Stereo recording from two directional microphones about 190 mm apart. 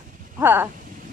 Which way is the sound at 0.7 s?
45° right (ahead or behind).